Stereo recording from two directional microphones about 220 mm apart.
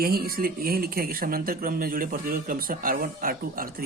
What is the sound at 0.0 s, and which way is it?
Speech, 40° right (ahead or behind).